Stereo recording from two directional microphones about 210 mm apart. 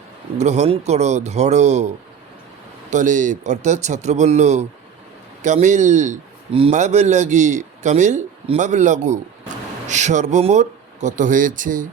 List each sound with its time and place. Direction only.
0.3 s a man's voice: 30° right (ahead or behind)
2.9 s a man's voice: 35° right (ahead or behind)